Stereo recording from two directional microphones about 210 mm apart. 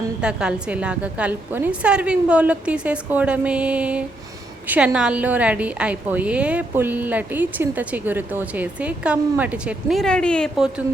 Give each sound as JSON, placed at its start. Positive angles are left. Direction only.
{"t": 0.2, "sound": "a woman's voice", "side_deg": -5}